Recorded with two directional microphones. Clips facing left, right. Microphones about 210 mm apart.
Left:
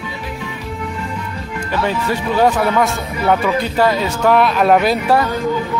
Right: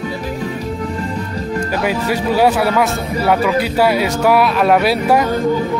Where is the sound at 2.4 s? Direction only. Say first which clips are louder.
Even; 10° right (ahead or behind).